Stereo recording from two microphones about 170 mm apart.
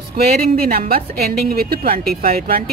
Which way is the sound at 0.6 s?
60° right (ahead or behind).